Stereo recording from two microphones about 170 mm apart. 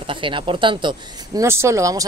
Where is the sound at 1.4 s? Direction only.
15° right (ahead or behind).